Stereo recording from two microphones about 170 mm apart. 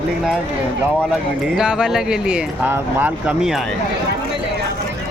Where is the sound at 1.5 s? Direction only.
5° right (ahead or behind).